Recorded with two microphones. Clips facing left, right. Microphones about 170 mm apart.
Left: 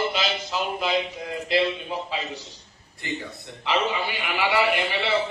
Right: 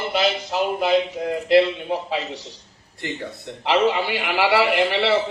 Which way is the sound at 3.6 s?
70° right (ahead or behind).